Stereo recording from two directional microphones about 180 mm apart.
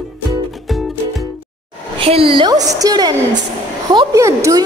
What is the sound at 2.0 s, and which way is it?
A woman's voice, 30° right (ahead or behind).